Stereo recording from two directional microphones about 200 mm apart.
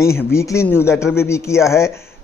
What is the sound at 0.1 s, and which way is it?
A man's voice, 15° left (ahead or behind).